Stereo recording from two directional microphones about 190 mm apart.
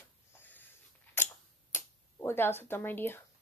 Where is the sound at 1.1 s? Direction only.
10° left (ahead or behind).